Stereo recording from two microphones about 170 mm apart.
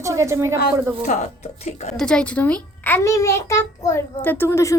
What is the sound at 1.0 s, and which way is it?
Speech, 45° left (ahead or behind).